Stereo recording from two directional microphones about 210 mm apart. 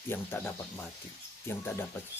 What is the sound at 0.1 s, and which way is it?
Speech, 10° left (ahead or behind).